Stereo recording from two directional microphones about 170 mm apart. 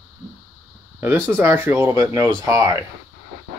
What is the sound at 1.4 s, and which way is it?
Speech, 15° right (ahead or behind).